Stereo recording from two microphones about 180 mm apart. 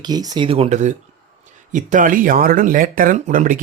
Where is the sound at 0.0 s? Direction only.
20° right (ahead or behind).